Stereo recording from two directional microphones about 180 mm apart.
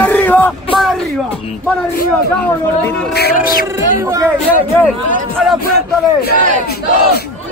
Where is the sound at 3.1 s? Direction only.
55° left (ahead or behind).